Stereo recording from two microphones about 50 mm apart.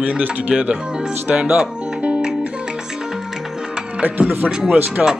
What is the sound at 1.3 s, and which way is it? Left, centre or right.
Music, right.